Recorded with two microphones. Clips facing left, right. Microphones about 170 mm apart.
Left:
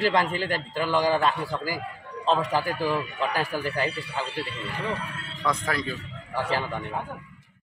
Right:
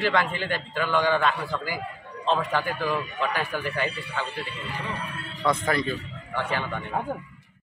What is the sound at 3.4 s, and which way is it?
Speech, 35° left (ahead or behind).